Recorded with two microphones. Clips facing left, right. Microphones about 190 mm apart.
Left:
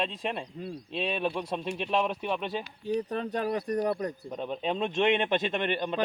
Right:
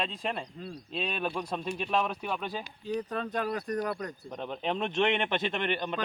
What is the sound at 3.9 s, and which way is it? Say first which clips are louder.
Speech: left 5 dB; 30° left (ahead or behind).